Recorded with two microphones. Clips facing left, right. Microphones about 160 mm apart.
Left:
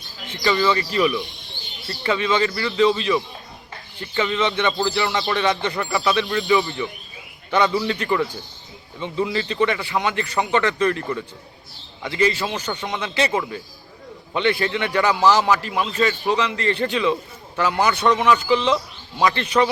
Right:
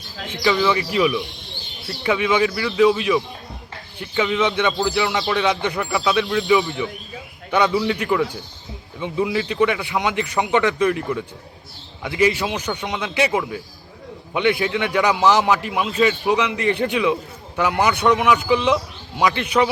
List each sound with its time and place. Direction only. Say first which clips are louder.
0.3 s speech: right 1 dB; centre (ahead or behind)
9.0 s a man's voice: right 2 dB; 10° right (ahead or behind)
12.8 s a man's voice: right 1 dB; centre (ahead or behind)